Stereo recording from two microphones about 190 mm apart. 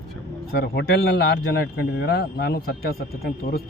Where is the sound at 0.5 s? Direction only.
60° left (ahead or behind).